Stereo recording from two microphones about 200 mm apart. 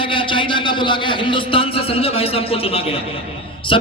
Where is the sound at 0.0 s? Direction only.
25° left (ahead or behind).